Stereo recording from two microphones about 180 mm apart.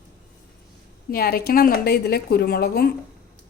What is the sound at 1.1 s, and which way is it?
A woman's voice, 60° left (ahead or behind).